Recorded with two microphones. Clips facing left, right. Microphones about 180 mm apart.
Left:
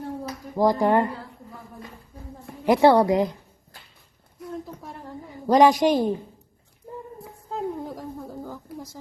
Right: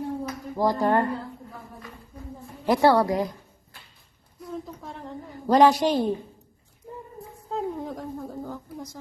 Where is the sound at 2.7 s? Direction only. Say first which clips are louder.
Left 3 dB; 20° left (ahead or behind).